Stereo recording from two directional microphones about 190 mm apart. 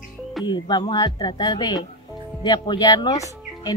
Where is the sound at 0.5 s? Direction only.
25° left (ahead or behind).